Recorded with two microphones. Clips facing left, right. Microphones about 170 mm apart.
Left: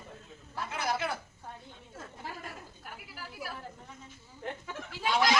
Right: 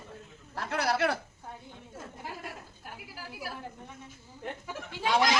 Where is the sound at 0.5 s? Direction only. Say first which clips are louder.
Right 4 dB; 70° right (ahead or behind).